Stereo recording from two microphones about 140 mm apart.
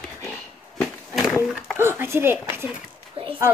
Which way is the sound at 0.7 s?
Centre (ahead or behind).